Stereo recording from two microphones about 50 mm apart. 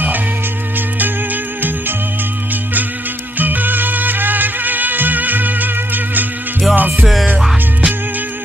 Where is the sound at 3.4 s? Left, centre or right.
Right.